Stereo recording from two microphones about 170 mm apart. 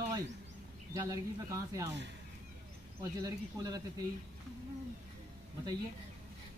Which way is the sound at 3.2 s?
20° right (ahead or behind).